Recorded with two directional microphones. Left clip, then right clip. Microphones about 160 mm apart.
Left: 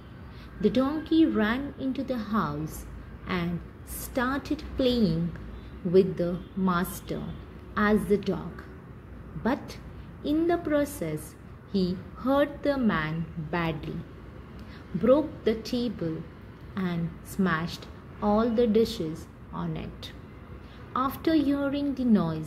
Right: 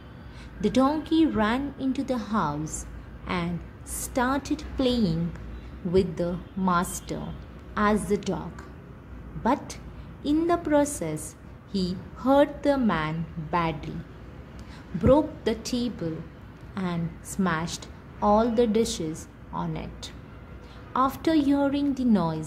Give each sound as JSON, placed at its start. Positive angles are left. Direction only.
{"t": 0.6, "sound": "a woman's voice", "side_deg": -20}
{"t": 9.4, "sound": "a woman's voice", "side_deg": -10}
{"t": 15.0, "sound": "a woman's voice", "side_deg": -15}